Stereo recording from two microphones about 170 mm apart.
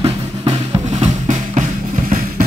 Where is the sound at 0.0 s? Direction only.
35° right (ahead or behind).